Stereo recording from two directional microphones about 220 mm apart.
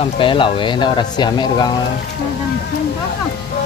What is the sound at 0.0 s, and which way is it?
Speech, 25° left (ahead or behind).